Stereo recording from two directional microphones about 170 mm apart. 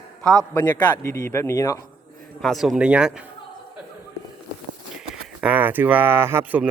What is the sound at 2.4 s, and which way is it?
Speech, centre (ahead or behind).